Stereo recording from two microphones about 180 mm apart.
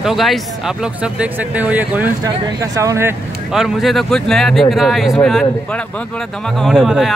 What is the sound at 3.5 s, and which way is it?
Speech, 5° right (ahead or behind).